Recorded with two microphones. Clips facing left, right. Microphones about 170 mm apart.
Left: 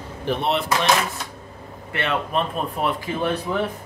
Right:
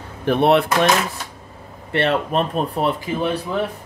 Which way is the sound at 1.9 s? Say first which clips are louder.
Right 5 dB; 35° right (ahead or behind).